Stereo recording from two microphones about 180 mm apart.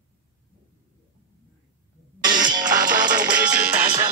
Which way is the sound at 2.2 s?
25° right (ahead or behind).